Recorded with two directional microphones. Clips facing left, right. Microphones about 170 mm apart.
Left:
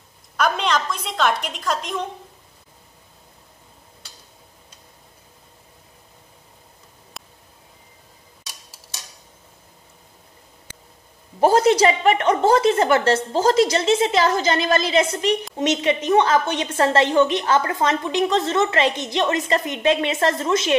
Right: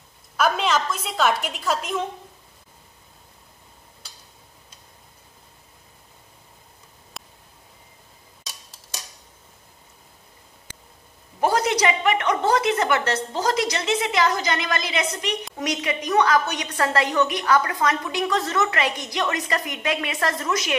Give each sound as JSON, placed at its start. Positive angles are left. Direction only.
{"t": 0.4, "sound": "a woman's voice", "side_deg": -5}
{"t": 7.2, "sound": "a sound", "side_deg": 0}
{"t": 11.3, "sound": "a woman's voice", "side_deg": 30}